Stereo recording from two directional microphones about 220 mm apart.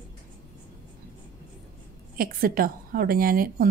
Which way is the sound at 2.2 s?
40° right (ahead or behind).